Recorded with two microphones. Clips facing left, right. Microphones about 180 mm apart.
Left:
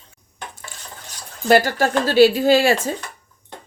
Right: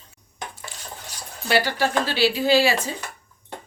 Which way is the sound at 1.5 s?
45° left (ahead or behind).